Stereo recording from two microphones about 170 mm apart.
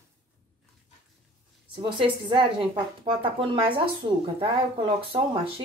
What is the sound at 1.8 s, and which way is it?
A woman's voice, 25° right (ahead or behind).